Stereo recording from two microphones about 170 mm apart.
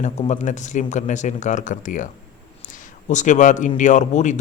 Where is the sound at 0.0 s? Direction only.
45° left (ahead or behind).